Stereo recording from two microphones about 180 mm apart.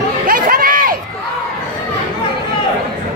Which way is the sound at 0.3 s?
55° right (ahead or behind).